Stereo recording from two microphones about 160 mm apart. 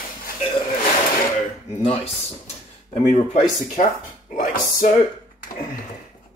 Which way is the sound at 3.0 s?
50° left (ahead or behind).